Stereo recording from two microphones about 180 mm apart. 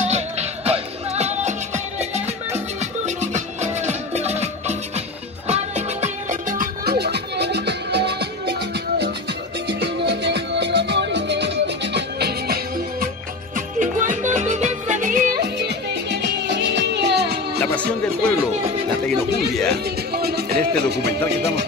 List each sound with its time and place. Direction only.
0.0 s music: 35° right (ahead or behind)
6.8 s music: 60° right (ahead or behind)
13.7 s music: 45° right (ahead or behind)
15.4 s music: 70° right (ahead or behind)
17.6 s music: 10° left (ahead or behind)
19.7 s music: 60° right (ahead or behind)